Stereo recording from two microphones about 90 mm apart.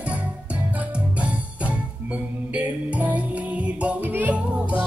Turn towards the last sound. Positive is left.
turn(degrees=-15)  # may be behind; listen again after turning